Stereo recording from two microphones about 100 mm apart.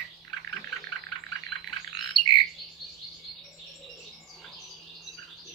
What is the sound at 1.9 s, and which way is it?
Bird, 50° left (ahead or behind).